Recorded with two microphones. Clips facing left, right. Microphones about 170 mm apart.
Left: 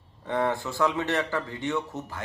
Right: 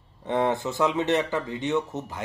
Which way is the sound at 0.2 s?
20° right (ahead or behind).